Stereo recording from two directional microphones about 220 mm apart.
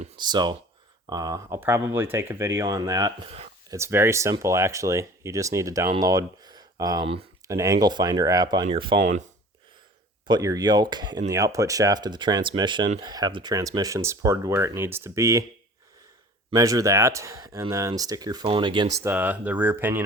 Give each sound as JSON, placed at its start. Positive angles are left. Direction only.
{"t": 0.0, "sound": "speech", "side_deg": -20}
{"t": 3.2, "sound": "a sound", "side_deg": -25}
{"t": 3.8, "sound": "speech", "side_deg": -10}
{"t": 7.5, "sound": "speech", "side_deg": -15}
{"t": 10.2, "sound": "speech", "side_deg": -15}
{"t": 16.5, "sound": "speech", "side_deg": -15}
{"t": 19.0, "sound": "speech", "side_deg": -10}